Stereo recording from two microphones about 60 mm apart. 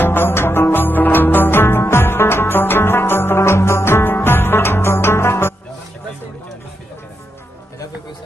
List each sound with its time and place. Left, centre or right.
0.0 s music: left